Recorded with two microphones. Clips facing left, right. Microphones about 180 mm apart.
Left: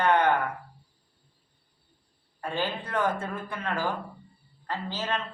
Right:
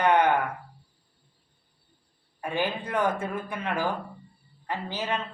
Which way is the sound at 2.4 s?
15° right (ahead or behind).